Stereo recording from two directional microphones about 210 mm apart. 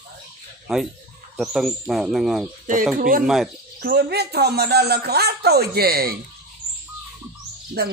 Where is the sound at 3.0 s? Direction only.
40° right (ahead or behind).